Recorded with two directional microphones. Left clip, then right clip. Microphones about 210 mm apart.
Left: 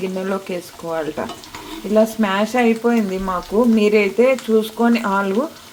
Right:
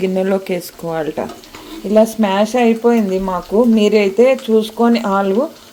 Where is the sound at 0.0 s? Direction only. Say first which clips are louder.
Right 7 dB; 20° right (ahead or behind).